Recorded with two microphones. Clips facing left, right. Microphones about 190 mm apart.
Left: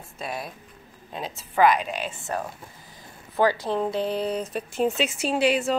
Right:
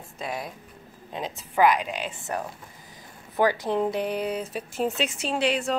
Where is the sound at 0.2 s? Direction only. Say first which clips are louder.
Even; 15° right (ahead or behind).